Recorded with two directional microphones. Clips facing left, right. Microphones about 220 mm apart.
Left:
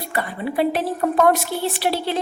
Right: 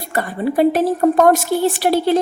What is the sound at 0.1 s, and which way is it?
A woman's voice, 45° right (ahead or behind).